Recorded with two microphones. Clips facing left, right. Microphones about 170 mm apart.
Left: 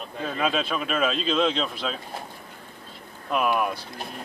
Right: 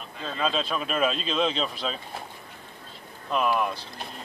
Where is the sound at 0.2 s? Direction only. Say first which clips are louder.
Left 2 dB; 10° left (ahead or behind).